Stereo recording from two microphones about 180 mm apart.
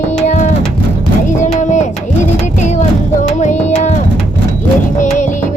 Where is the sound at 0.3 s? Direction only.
45° left (ahead or behind).